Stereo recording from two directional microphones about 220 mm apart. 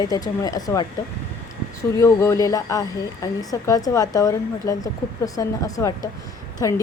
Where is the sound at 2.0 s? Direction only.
15° left (ahead or behind).